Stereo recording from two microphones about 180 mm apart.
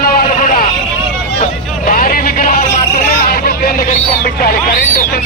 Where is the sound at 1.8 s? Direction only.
55° left (ahead or behind).